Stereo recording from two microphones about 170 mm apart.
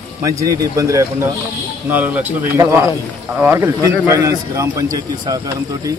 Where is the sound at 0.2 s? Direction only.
20° right (ahead or behind).